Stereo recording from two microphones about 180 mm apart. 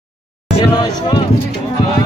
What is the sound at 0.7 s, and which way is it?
Speech, 25° left (ahead or behind).